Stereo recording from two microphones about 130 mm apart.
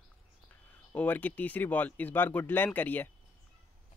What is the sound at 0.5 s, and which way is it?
Speech, 10° left (ahead or behind).